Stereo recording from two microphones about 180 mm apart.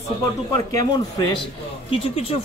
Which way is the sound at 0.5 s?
20° left (ahead or behind).